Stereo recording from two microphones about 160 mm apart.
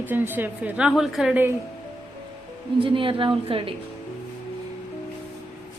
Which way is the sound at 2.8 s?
35° right (ahead or behind).